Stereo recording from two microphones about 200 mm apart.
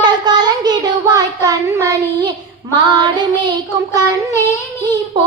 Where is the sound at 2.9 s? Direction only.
20° right (ahead or behind).